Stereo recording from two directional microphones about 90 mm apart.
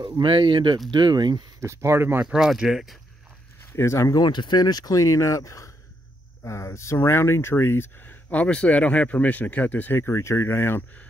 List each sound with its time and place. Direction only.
0.2 s speech: 65° right (ahead or behind)
1.6 s speech: 30° right (ahead or behind)
2.2 s speech: 10° right (ahead or behind)
3.7 s speech: 30° left (ahead or behind)
4.2 s speech: 55° left (ahead or behind); by 10.8 s 30° left (ahead or behind)